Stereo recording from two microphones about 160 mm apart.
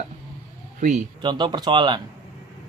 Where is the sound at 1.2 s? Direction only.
30° right (ahead or behind).